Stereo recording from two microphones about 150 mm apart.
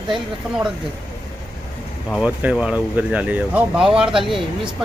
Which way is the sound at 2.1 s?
5° right (ahead or behind).